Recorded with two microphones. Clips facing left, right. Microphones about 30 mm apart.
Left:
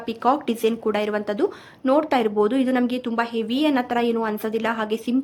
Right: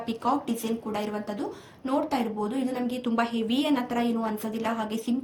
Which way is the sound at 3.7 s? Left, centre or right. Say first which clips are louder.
Left 5 dB; left.